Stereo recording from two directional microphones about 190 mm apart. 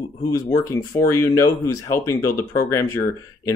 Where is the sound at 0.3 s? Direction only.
15° left (ahead or behind).